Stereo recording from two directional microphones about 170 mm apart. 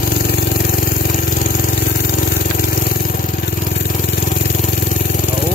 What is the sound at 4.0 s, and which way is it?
Vehicle, 50° left (ahead or behind).